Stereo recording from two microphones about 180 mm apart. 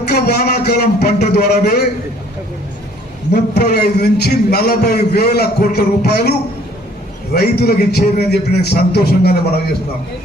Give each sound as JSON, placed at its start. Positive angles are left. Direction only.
{"t": 0.1, "sound": "a man's voice", "side_deg": 60}
{"t": 3.3, "sound": "a man's voice", "side_deg": 65}
{"t": 7.3, "sound": "a man's voice", "side_deg": 60}